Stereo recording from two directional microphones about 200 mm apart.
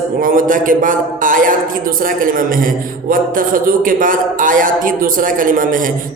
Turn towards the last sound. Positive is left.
turn(degrees=-40)  # may be behind; listen again after turning